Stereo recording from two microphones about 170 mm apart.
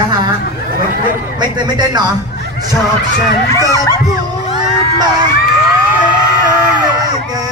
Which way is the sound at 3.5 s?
20° left (ahead or behind).